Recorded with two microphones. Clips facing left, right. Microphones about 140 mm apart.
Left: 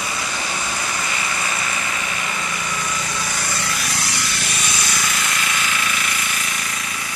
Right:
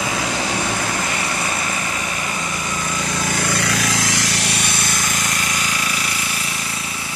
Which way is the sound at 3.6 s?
90° right.